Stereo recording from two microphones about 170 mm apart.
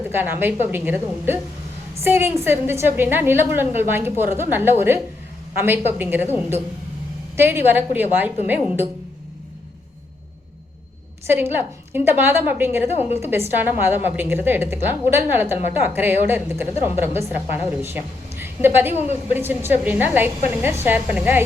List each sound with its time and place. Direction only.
0.1 s a woman's voice: 10° right (ahead or behind)
11.3 s a woman's voice: 10° right (ahead or behind)
12.9 s a woman's voice: 35° left (ahead or behind)
13.1 s a woman's voice: 15° right (ahead or behind)